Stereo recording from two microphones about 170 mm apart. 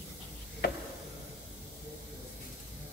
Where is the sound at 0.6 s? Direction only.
70° left (ahead or behind).